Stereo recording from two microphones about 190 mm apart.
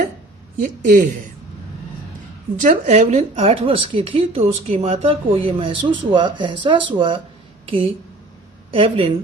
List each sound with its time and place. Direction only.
0.6 s a woman's voice: 45° right (ahead or behind)
2.6 s speech: 40° right (ahead or behind)
8.7 s a woman's voice: 30° right (ahead or behind)